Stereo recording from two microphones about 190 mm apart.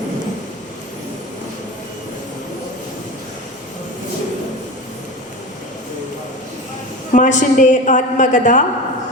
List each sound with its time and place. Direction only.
7.1 s a woman's voice: 40° left (ahead or behind)